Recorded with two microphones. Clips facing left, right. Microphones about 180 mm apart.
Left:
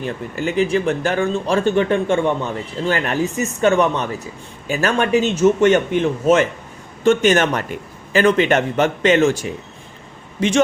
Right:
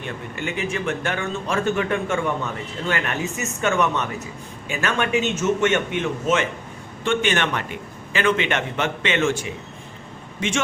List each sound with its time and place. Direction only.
0.0 s speech: 35° left (ahead or behind)